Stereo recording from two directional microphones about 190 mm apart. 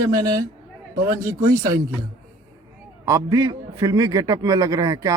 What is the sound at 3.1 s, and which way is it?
A man's voice, 15° right (ahead or behind).